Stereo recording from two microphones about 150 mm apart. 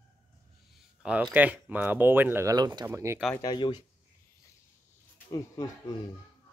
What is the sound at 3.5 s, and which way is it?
Speech, 30° left (ahead or behind).